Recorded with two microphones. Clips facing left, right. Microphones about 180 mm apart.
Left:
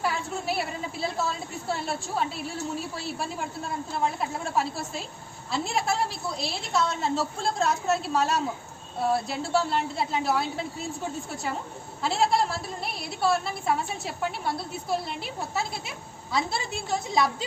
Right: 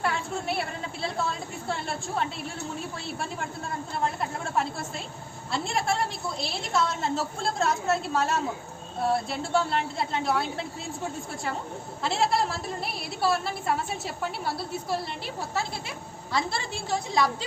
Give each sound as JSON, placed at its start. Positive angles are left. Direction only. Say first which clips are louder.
{"t": 0.0, "sound": "a sound", "louder": "even", "side_deg": 5}
{"t": 1.0, "sound": "a woman's voice", "louder": "even", "side_deg": 5}
{"t": 12.0, "sound": "a woman's voice", "louder": "left 1 dB", "side_deg": 0}
{"t": 16.3, "sound": "a woman's voice", "louder": "left 1 dB", "side_deg": 0}